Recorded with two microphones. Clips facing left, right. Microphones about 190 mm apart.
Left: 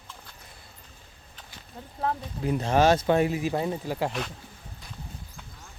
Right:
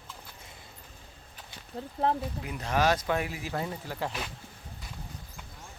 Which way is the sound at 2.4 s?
30° left (ahead or behind).